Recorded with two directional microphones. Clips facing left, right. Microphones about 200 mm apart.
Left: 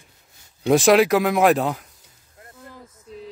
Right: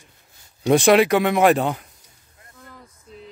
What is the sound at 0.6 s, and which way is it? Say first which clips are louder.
Speech: even; centre (ahead or behind).